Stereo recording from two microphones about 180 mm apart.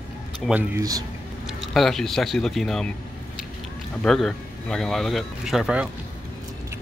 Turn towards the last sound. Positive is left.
turn(degrees=-5)  # may be behind; listen again after turning